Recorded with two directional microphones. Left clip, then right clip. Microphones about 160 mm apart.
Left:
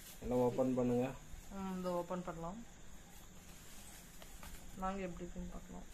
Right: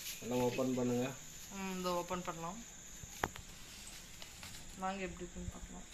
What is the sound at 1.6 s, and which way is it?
Speech, 55° left (ahead or behind).